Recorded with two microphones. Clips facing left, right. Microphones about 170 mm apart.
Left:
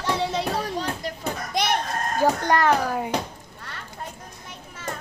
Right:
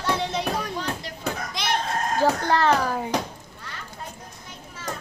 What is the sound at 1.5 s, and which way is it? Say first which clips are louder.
Chicken: left 5 dB; 60° left (ahead or behind).